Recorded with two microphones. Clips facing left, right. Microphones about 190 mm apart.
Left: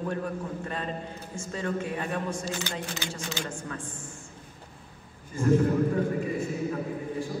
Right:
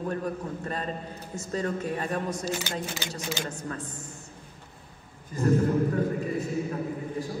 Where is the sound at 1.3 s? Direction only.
40° right (ahead or behind).